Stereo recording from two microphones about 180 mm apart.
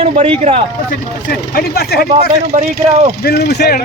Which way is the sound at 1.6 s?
60° left (ahead or behind).